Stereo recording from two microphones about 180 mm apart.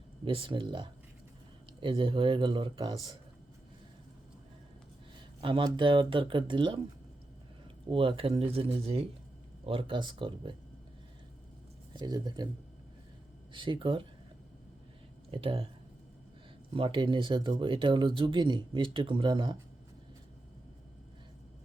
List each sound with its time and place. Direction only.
0.3 s speech: 30° right (ahead or behind)
5.4 s speech: 25° right (ahead or behind)
7.9 s speech: 30° right (ahead or behind)
11.9 s speech: 20° right (ahead or behind)
13.5 s speech: 25° right (ahead or behind)
15.3 s speech: 30° right (ahead or behind)
16.7 s speech: 30° right (ahead or behind)